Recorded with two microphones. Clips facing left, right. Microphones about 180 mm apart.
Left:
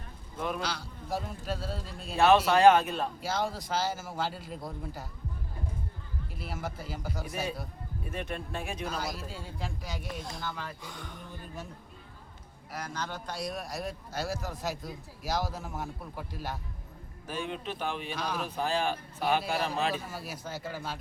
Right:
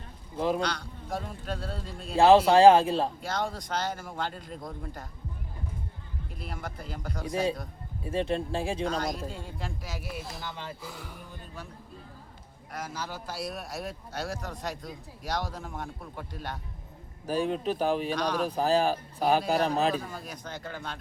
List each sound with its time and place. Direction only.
0.3 s speech: 30° right (ahead or behind)
0.6 s a man's voice: 5° left (ahead or behind)
2.1 s speech: 30° right (ahead or behind)
3.2 s a man's voice: 5° left (ahead or behind)
6.4 s a man's voice: 5° left (ahead or behind)
8.0 s speech: 30° right (ahead or behind)
8.9 s a man's voice: 5° left (ahead or behind)
10.4 s speech: 20° right (ahead or behind)
10.8 s speech: 5° right (ahead or behind)
12.7 s a man's voice: 5° right (ahead or behind)
17.2 s speech: 35° right (ahead or behind)
18.1 s a man's voice: 5° left (ahead or behind)
18.4 s speech: 35° right (ahead or behind)
20.1 s speech: 5° left (ahead or behind)